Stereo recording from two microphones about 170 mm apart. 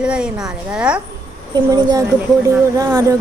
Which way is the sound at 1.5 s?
25° right (ahead or behind).